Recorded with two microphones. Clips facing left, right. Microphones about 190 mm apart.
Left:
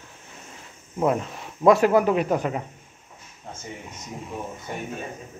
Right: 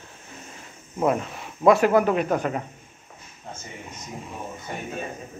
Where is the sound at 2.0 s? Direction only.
20° left (ahead or behind).